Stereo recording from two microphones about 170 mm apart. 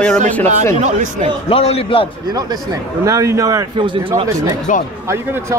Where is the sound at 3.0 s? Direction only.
20° right (ahead or behind).